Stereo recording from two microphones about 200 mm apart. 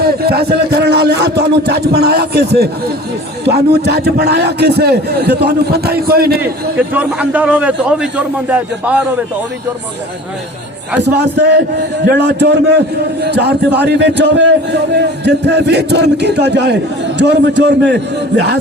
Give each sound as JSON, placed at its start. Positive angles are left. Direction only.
{"t": 0.0, "sound": "a man's voice", "side_deg": -50}
{"t": 6.4, "sound": "a man's voice", "side_deg": -5}
{"t": 12.0, "sound": "a man's voice", "side_deg": -55}